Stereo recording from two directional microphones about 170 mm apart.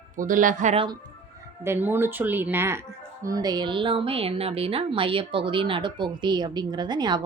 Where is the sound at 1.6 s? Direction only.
15° right (ahead or behind).